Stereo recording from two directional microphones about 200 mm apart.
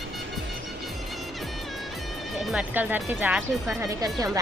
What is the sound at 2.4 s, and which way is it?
Speech, 5° right (ahead or behind).